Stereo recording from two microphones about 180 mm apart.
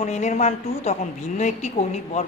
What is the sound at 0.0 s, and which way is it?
Speech, 40° left (ahead or behind).